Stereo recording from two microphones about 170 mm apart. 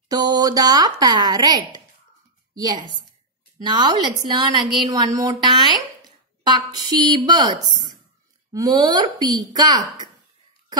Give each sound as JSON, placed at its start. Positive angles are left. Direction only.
{"t": 0.1, "sound": "speech", "side_deg": -20}